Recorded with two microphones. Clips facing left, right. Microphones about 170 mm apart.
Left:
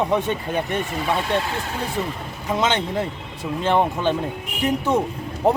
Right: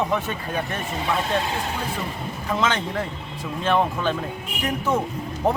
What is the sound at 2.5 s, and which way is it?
A man's voice, 20° left (ahead or behind).